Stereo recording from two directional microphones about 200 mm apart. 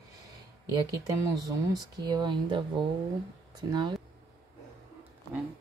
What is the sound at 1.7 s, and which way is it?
Speech, 20° right (ahead or behind).